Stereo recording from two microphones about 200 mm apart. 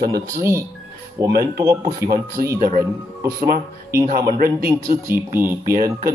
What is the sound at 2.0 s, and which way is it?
Speech, 50° right (ahead or behind).